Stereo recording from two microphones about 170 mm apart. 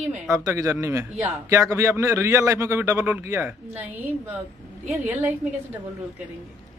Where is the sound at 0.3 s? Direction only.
15° right (ahead or behind).